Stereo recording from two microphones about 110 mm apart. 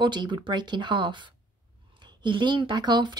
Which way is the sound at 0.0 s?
45° right (ahead or behind).